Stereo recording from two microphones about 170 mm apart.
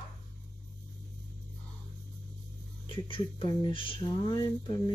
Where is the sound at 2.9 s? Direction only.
30° left (ahead or behind).